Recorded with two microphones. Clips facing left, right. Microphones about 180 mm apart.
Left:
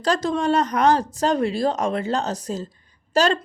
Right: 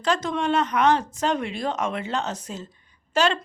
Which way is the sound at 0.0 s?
35° left (ahead or behind).